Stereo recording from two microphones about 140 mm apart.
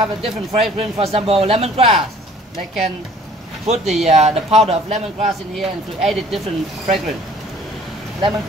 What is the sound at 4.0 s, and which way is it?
Speech, 50° right (ahead or behind).